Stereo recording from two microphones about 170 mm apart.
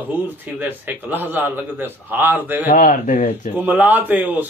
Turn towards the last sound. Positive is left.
turn(degrees=-10)  # may be behind; listen again after turning